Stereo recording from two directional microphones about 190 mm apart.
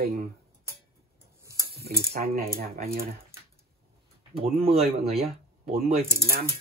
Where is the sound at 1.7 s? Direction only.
55° right (ahead or behind).